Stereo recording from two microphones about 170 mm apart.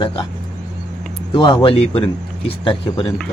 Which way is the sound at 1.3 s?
30° left (ahead or behind).